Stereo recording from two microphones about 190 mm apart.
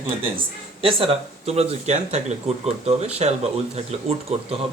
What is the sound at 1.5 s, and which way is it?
Speech, 35° right (ahead or behind).